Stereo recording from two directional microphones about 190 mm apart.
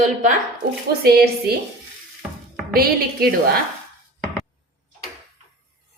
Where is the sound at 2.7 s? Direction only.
55° right (ahead or behind).